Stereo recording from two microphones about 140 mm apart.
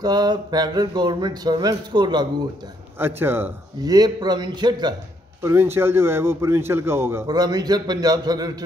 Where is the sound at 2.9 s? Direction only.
15° right (ahead or behind).